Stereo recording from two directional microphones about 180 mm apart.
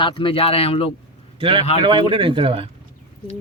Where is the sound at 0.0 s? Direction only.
30° left (ahead or behind).